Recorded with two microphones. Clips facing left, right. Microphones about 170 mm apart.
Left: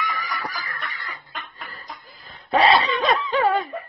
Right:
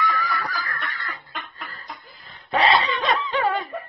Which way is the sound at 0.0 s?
15° left (ahead or behind).